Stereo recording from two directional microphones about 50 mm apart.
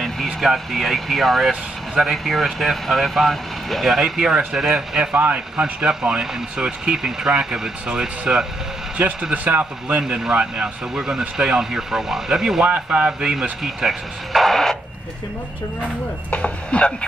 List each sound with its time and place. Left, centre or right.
0.0 s a sound: centre
0.5 s speech: centre
5.1 s speech: right
5.6 s speech: right
9.5 s speech: right
10.3 s speech: right
12.6 s speech: right
13.2 s speech: centre
16.3 s chopping: left